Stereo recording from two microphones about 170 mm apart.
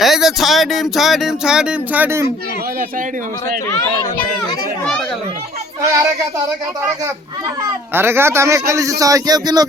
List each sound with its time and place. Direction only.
0.0 s speech: centre (ahead or behind)
7.9 s speech: 15° right (ahead or behind)